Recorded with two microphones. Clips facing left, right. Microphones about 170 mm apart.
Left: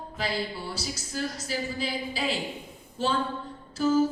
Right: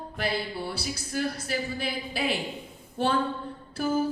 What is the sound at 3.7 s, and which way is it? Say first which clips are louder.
Music: left 4 dB; 60° right (ahead or behind).